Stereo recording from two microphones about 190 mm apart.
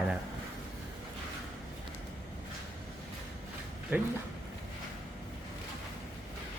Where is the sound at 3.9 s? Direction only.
10° right (ahead or behind).